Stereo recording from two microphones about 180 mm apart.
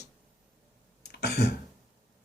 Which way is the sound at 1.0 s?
65° left (ahead or behind).